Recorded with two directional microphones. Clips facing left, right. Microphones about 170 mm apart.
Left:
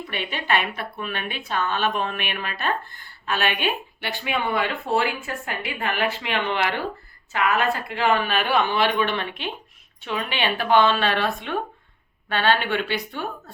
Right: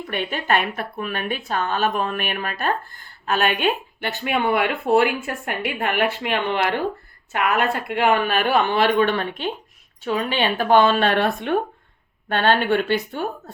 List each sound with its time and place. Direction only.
0.1 s speech: 45° right (ahead or behind)
7.3 s speech: 60° right (ahead or behind)